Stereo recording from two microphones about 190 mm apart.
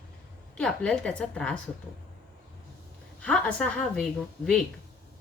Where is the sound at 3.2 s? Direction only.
5° left (ahead or behind).